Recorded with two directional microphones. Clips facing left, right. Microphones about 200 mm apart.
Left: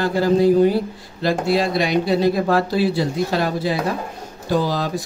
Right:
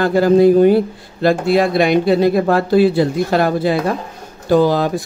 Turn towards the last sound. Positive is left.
turn(degrees=-55)  # may be behind; listen again after turning